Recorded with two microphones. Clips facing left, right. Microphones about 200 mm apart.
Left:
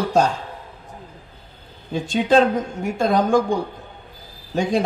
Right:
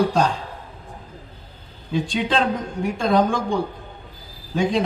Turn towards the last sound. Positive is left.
turn(degrees=45)  # may be behind; listen again after turning